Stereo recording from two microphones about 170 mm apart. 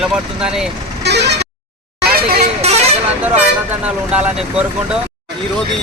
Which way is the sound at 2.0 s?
65° right (ahead or behind).